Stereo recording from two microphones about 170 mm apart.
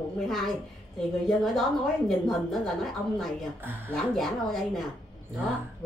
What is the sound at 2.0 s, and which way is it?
A woman's voice, centre (ahead or behind).